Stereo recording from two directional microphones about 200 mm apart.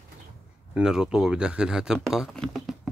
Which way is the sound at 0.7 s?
5° right (ahead or behind).